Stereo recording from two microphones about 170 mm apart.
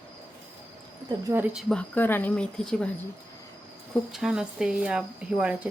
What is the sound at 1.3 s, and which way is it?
Speech, 20° right (ahead or behind).